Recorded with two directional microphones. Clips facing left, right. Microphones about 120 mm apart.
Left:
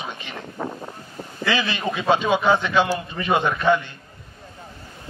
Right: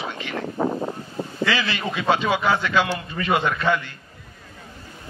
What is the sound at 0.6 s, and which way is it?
Wind, 55° right (ahead or behind).